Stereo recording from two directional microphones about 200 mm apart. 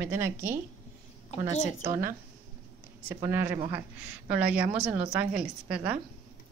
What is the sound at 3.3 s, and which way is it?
A woman's voice, 10° right (ahead or behind).